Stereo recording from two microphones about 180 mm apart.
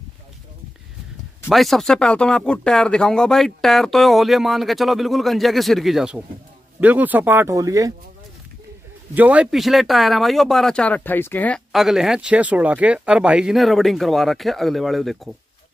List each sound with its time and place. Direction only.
1.5 s speech: centre (ahead or behind); by 7.9 s 20° right (ahead or behind)
9.1 s speech: 10° right (ahead or behind)